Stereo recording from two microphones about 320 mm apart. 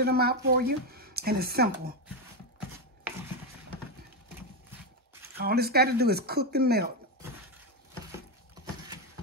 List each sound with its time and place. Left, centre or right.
0.0 s speech: right
5.4 s speech: right